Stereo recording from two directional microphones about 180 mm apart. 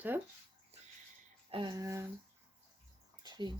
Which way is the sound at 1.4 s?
25° right (ahead or behind).